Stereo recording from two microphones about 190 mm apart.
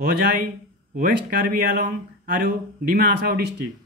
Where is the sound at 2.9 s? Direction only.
55° right (ahead or behind).